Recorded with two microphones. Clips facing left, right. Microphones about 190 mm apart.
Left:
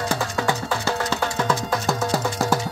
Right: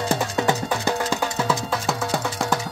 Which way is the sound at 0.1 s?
20° right (ahead or behind).